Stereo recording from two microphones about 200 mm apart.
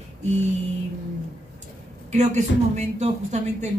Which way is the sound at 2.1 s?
35° right (ahead or behind).